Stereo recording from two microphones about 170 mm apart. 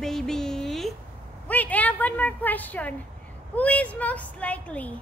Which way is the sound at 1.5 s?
10° left (ahead or behind).